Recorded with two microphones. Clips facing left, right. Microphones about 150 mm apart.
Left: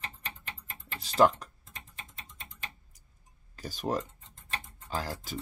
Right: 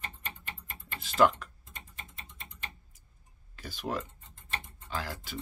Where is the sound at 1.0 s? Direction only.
40° left (ahead or behind).